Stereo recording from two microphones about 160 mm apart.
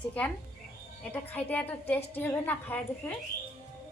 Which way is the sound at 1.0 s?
10° left (ahead or behind).